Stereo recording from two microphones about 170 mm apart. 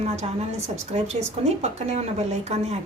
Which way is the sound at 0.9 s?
40° right (ahead or behind).